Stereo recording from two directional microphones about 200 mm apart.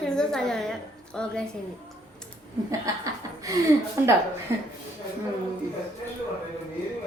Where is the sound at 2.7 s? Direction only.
15° right (ahead or behind).